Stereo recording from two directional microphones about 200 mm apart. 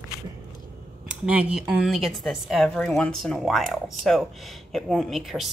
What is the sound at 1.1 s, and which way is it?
A woman's voice, 5° right (ahead or behind).